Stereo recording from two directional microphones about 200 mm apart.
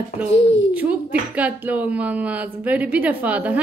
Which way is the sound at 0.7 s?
5° right (ahead or behind).